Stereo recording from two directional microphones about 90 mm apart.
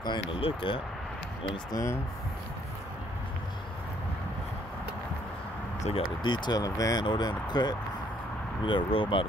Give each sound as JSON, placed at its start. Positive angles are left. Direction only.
{"t": 0.0, "sound": "speech", "side_deg": 70}
{"t": 1.7, "sound": "speech", "side_deg": 35}
{"t": 5.9, "sound": "speech", "side_deg": 60}
{"t": 6.6, "sound": "speech", "side_deg": 40}
{"t": 7.1, "sound": "speech", "side_deg": 50}
{"t": 8.6, "sound": "speech", "side_deg": 70}